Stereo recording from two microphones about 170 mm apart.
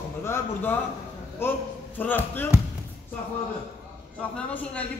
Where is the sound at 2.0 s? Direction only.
10° left (ahead or behind).